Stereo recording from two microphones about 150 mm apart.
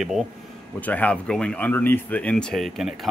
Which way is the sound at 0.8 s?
10° left (ahead or behind).